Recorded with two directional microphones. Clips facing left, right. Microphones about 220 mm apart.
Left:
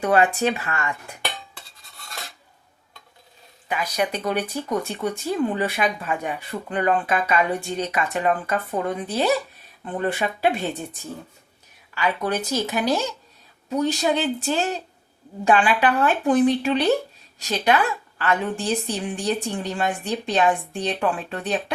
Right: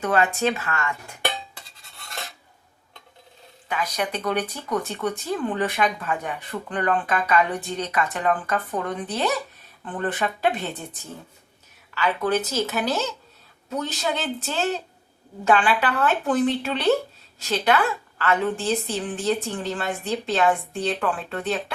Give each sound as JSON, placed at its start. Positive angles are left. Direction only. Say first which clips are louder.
{"t": 0.0, "sound": "speech", "louder": "left 2 dB", "side_deg": 15}
{"t": 3.7, "sound": "speech", "louder": "left 2 dB", "side_deg": 10}
{"t": 11.9, "sound": "speech", "louder": "right 1 dB", "side_deg": 10}
{"t": 18.2, "sound": "speech", "louder": "right 1 dB", "side_deg": 15}